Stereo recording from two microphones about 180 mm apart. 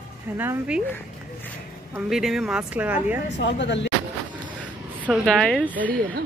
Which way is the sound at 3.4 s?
80° left.